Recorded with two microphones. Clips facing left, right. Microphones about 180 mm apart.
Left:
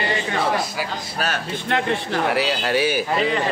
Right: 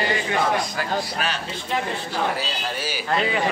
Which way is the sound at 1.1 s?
45° left (ahead or behind).